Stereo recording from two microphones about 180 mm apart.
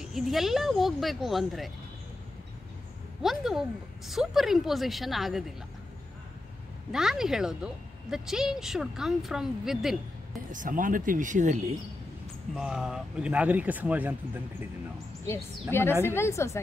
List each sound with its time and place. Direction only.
0.0 s speech: centre (ahead or behind)
3.2 s speech: centre (ahead or behind)
6.9 s speech: 5° right (ahead or behind)
10.5 s speech: 50° right (ahead or behind)
12.5 s speech: 5° right (ahead or behind)
15.7 s a woman's voice: 15° left (ahead or behind)